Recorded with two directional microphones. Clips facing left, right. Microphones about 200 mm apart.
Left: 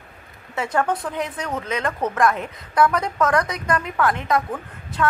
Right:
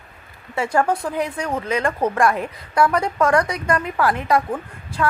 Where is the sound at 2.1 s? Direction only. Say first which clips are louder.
Right 1 dB; 10° right (ahead or behind).